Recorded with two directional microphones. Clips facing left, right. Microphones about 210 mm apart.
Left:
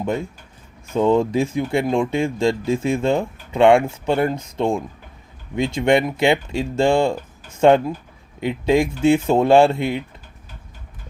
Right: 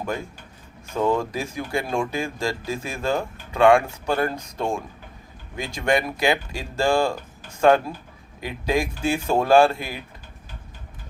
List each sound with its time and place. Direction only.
0.9 s speech: 25° left (ahead or behind)